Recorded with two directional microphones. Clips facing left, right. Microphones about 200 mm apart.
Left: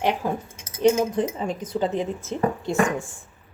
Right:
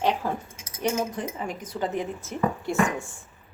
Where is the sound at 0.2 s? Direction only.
15° left (ahead or behind).